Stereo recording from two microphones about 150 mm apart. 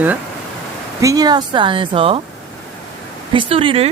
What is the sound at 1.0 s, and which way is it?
Speech, 25° right (ahead or behind).